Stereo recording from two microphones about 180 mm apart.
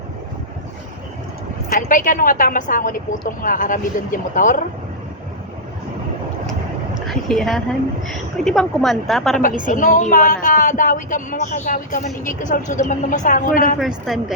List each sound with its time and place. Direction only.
1.7 s speech: 45° left (ahead or behind)
7.1 s a woman's voice: centre (ahead or behind)
9.6 s speech: 45° left (ahead or behind)
13.7 s a woman's voice: centre (ahead or behind)